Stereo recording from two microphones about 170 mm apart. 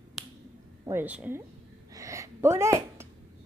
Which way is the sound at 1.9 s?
20° right (ahead or behind).